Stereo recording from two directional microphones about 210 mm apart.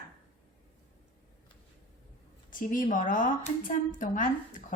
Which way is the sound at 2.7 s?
40° left (ahead or behind).